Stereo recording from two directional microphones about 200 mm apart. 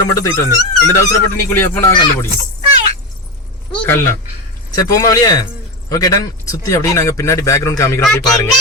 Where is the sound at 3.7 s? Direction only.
10° left (ahead or behind).